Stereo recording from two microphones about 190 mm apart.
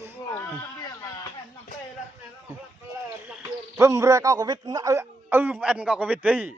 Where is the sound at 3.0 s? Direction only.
10° right (ahead or behind).